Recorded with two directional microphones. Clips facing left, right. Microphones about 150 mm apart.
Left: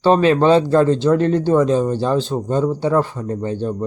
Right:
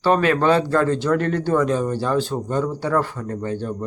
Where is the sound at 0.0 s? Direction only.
25° left (ahead or behind).